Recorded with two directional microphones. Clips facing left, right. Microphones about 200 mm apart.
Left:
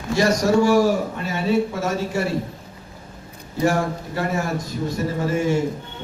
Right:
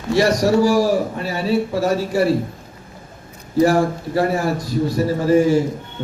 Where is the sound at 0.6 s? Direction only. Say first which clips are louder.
Right 1 dB; 35° right (ahead or behind).